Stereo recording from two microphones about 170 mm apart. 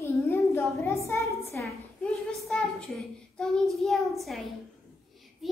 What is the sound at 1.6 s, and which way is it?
A child's voice, centre (ahead or behind).